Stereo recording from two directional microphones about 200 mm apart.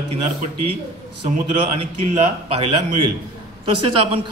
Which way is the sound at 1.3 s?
40° right (ahead or behind).